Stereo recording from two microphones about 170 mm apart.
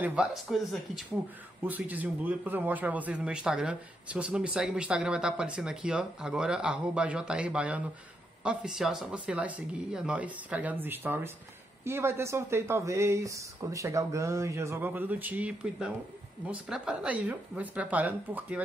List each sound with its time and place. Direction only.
0.0 s a man's voice: 5° right (ahead or behind)